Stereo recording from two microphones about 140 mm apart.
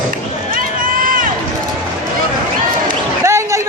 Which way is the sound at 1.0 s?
80° right.